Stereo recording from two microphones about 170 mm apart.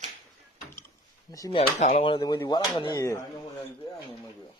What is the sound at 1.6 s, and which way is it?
Speech, 35° left (ahead or behind).